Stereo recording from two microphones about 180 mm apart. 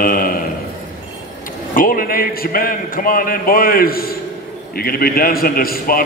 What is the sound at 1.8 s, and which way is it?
A man's voice, 50° left (ahead or behind).